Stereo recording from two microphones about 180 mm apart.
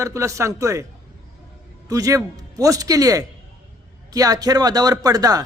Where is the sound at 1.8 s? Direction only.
20° right (ahead or behind).